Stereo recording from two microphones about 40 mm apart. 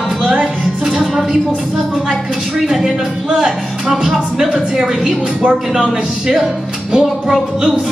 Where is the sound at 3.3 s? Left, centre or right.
Centre.